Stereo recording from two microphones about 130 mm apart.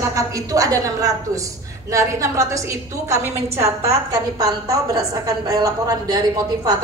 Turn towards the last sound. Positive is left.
turn(degrees=-30)  # may be behind; listen again after turning